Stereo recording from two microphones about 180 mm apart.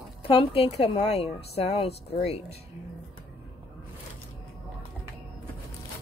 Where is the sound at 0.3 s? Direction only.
30° left (ahead or behind).